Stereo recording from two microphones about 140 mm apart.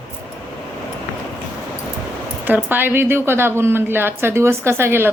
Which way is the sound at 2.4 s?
15° right (ahead or behind).